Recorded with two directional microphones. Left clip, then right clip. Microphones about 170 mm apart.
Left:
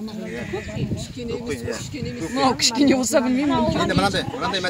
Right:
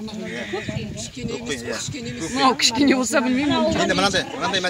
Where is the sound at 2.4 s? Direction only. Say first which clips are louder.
Right 1 dB; 70° left (ahead or behind).